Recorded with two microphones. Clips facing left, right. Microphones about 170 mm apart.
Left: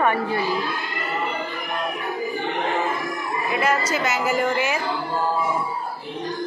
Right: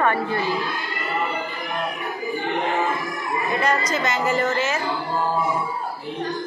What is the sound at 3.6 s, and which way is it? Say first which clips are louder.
Speech: left 2 dB; 5° left (ahead or behind).